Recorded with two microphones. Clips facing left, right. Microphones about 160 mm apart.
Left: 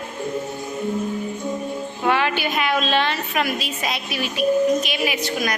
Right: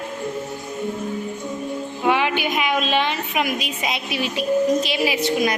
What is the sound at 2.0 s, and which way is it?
A woman's voice, 10° right (ahead or behind).